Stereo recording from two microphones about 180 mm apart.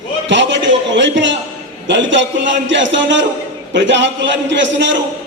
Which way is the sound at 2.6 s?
90° right.